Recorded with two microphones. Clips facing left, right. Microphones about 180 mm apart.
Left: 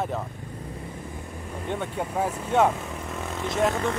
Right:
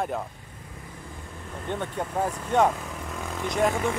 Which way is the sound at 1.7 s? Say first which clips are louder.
Even; 5° left (ahead or behind).